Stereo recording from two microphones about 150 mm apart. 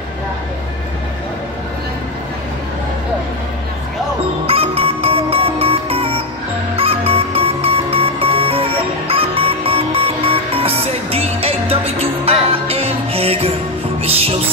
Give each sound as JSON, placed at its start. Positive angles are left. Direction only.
{"t": 4.5, "sound": "music", "side_deg": -40}